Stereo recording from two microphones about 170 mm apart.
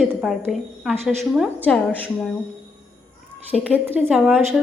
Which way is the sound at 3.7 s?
10° right (ahead or behind).